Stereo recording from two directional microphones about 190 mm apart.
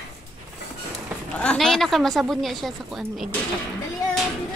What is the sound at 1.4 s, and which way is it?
A woman's voice, 5° left (ahead or behind).